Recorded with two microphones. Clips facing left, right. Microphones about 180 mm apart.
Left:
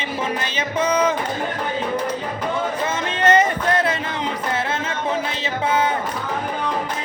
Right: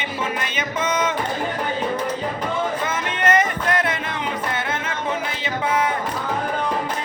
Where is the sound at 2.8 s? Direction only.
30° left (ahead or behind).